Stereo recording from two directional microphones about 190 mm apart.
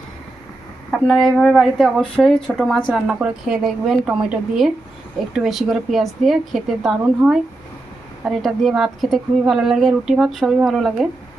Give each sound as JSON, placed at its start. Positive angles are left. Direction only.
{"t": 0.9, "sound": "a woman's voice", "side_deg": 0}